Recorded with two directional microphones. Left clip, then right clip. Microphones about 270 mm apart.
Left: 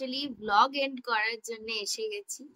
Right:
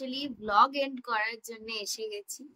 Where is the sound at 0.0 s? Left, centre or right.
Centre.